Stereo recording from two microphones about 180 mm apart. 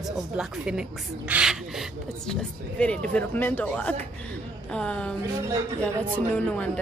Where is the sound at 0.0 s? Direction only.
5° right (ahead or behind).